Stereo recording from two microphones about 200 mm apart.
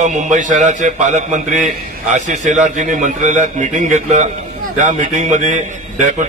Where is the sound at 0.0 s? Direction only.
40° right (ahead or behind).